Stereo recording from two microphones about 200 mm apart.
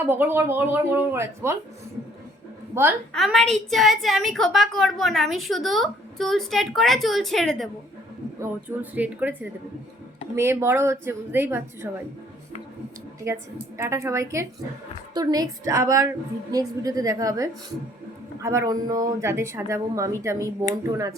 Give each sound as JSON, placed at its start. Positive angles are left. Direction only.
{"t": 0.1, "sound": "speech", "side_deg": -10}
{"t": 3.1, "sound": "a woman's voice", "side_deg": 0}
{"t": 8.4, "sound": "speech", "side_deg": -10}
{"t": 13.2, "sound": "speech", "side_deg": -15}